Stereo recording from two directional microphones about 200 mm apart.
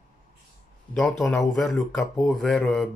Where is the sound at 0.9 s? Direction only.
Centre (ahead or behind).